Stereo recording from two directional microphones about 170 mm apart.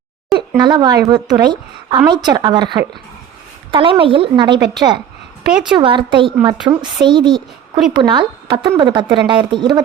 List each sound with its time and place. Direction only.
0.5 s a woman's voice: 25° right (ahead or behind)
5.5 s a woman's voice: 5° right (ahead or behind)
5.7 s a woman's voice: 30° right (ahead or behind)